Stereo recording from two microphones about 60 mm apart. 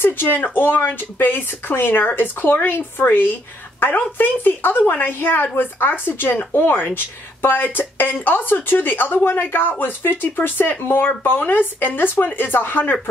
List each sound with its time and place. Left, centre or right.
0.0 s speech: left